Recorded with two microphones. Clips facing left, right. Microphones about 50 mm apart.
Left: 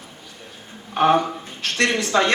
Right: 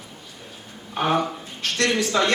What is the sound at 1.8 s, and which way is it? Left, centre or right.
Speech, left.